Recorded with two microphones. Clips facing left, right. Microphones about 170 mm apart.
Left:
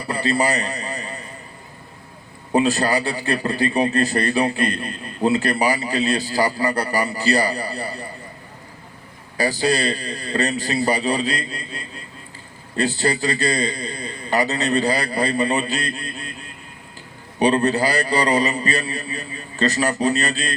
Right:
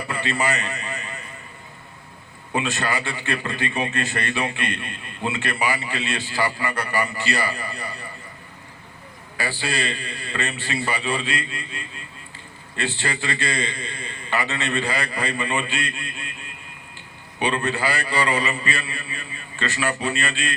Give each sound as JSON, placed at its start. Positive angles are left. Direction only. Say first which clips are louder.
{"t": 0.0, "sound": "a sound", "louder": "left 4 dB", "side_deg": 35}
{"t": 2.5, "sound": "a man's voice", "louder": "left 7 dB", "side_deg": 35}
{"t": 9.4, "sound": "a man's voice", "louder": "left 7 dB", "side_deg": 40}